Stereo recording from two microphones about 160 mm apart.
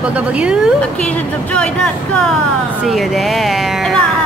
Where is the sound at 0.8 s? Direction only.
5° left (ahead or behind).